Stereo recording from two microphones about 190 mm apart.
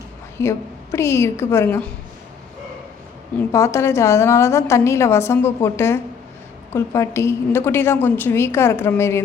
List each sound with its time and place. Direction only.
0.3 s a woman's voice: 15° left (ahead or behind)
3.5 s a woman's voice: 15° left (ahead or behind)